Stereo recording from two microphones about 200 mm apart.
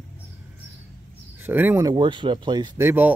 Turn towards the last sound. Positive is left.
turn(degrees=-10)  # may be behind; listen again after turning